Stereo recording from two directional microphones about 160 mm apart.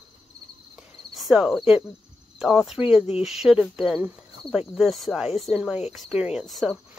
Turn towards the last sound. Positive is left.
turn(degrees=0)  # may be behind; listen again after turning